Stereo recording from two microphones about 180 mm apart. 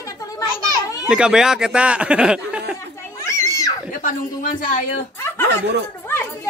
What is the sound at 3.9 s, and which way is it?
Speech, 50° left (ahead or behind).